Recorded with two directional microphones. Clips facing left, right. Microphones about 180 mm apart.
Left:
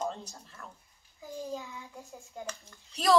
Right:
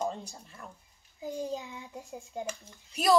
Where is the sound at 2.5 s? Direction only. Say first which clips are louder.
Right 3 dB; 10° right (ahead or behind).